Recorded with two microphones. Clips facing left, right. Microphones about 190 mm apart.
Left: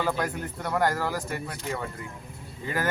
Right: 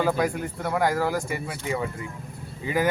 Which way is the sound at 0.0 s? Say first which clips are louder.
Right 4 dB; 5° right (ahead or behind).